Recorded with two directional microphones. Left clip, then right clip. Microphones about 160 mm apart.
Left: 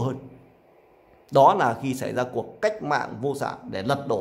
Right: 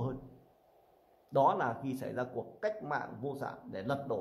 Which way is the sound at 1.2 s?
25° left (ahead or behind).